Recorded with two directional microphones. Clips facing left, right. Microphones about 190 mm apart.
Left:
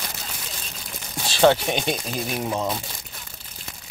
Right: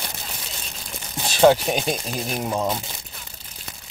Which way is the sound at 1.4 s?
5° right (ahead or behind).